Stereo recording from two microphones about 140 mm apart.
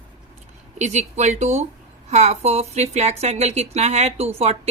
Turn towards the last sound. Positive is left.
turn(degrees=-45)  # may be behind; listen again after turning